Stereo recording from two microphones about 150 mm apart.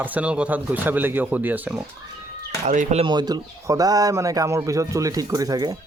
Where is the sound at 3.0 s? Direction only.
30° right (ahead or behind).